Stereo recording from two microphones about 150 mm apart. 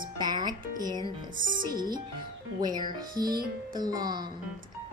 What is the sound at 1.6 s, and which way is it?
Speech, 30° right (ahead or behind).